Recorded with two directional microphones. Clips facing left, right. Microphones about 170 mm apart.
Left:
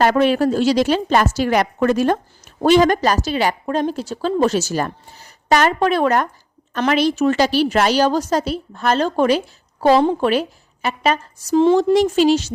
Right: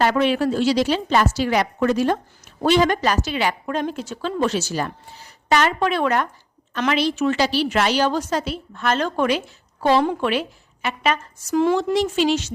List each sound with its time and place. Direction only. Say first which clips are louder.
0.0 s a woman's voice: left 4 dB; 45° left (ahead or behind); by 11.8 s 25° left (ahead or behind)
11.8 s a woman's voice: left 6 dB; 40° left (ahead or behind)